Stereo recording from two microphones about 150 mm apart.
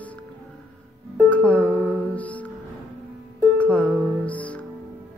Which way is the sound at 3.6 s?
10° left (ahead or behind).